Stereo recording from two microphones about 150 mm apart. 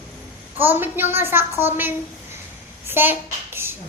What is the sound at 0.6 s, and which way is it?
A child's voice, 15° right (ahead or behind).